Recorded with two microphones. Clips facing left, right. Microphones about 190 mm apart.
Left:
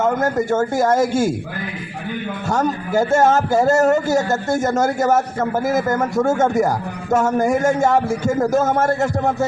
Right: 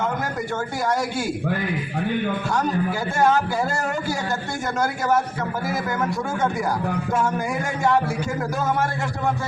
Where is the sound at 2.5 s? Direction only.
45° left (ahead or behind).